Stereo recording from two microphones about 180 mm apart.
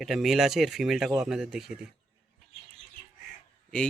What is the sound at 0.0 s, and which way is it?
Speech, centre (ahead or behind).